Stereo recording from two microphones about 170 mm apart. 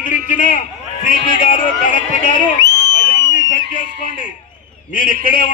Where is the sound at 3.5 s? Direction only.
50° left (ahead or behind).